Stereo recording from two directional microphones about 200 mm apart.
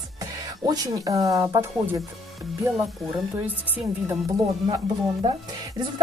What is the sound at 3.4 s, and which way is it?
Speech, 10° right (ahead or behind).